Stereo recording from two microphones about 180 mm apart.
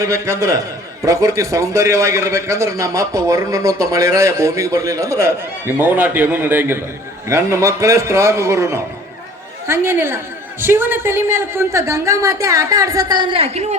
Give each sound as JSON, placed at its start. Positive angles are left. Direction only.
{"t": 0.0, "sound": "a man's voice", "side_deg": -15}